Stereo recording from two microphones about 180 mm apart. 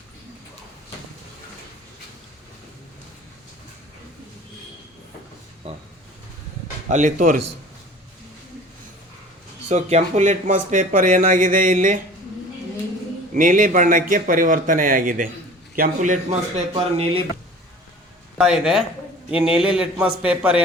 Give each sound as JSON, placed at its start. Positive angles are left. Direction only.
{"t": 5.6, "sound": "a sound", "side_deg": -35}
{"t": 6.9, "sound": "speech", "side_deg": -45}
{"t": 9.6, "sound": "speech", "side_deg": -40}
{"t": 13.3, "sound": "speech", "side_deg": -45}
{"t": 18.3, "sound": "speech", "side_deg": -5}